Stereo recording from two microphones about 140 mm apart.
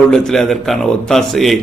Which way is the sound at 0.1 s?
5° left (ahead or behind).